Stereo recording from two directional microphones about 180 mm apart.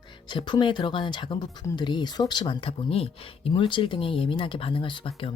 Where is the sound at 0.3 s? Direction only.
25° left (ahead or behind).